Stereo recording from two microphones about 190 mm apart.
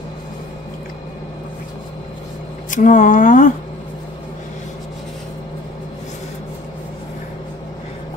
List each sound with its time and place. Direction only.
2.7 s speech: 40° left (ahead or behind)